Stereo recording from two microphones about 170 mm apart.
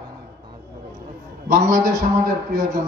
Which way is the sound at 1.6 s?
20° right (ahead or behind).